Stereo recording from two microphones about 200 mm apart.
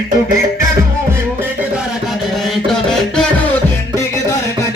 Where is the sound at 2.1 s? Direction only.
Centre (ahead or behind).